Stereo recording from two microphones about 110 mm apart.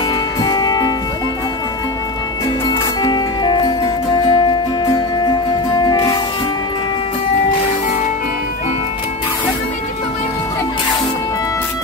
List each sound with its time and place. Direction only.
0.4 s music: 40° left (ahead or behind)
3.0 s music: 45° left (ahead or behind)